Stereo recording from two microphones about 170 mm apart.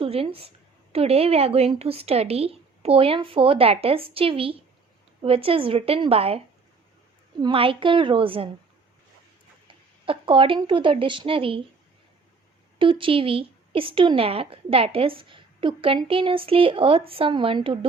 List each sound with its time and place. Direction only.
0.0 s a woman's voice: 35° right (ahead or behind)
7.4 s a woman's voice: 30° right (ahead or behind)
10.1 s a woman's voice: 30° right (ahead or behind)
12.8 s a woman's voice: 30° right (ahead or behind)